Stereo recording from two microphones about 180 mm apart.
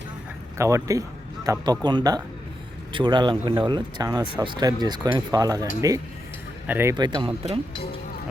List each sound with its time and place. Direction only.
0.6 s speech: 15° right (ahead or behind)
6.9 s speech: 25° right (ahead or behind)